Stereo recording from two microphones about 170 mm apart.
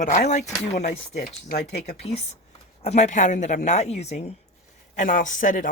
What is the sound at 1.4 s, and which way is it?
Speech, 70° left (ahead or behind).